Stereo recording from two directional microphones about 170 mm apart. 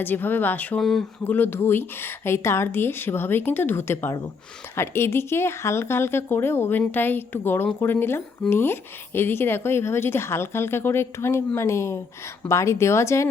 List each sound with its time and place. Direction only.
0.0 s speech: 10° left (ahead or behind)
1.2 s speech: 10° left (ahead or behind)